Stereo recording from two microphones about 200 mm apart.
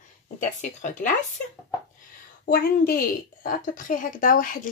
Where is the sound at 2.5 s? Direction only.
50° left (ahead or behind).